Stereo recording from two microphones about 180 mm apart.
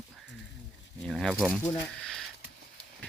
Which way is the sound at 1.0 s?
Centre (ahead or behind).